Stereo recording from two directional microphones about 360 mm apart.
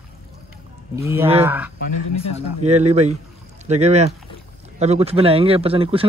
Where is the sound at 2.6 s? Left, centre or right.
Centre.